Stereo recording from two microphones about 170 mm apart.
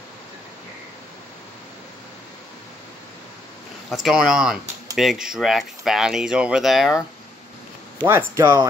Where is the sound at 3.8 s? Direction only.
Centre (ahead or behind).